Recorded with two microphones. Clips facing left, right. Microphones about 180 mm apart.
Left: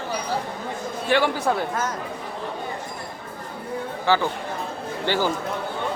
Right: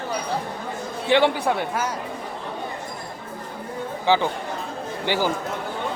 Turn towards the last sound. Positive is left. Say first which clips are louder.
# even
turn(degrees=-15)  # may be behind; listen again after turning